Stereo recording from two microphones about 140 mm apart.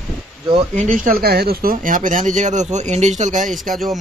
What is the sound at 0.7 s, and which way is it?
Speech, 75° right (ahead or behind).